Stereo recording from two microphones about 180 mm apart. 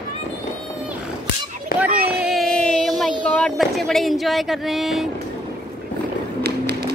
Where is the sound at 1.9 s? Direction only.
60° right (ahead or behind).